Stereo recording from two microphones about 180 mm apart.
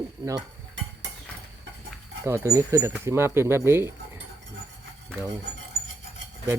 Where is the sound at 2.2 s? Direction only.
15° right (ahead or behind).